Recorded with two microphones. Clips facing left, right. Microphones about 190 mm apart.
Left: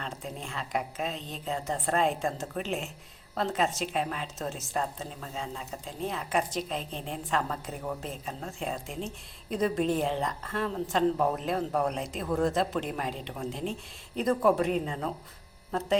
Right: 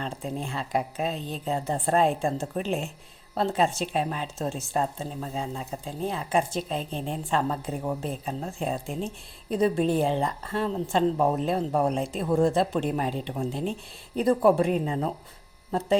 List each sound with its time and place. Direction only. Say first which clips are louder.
0.0 s a woman's voice: right 6 dB; 30° right (ahead or behind)